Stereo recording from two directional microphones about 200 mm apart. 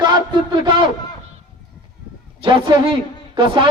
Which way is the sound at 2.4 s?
25° right (ahead or behind).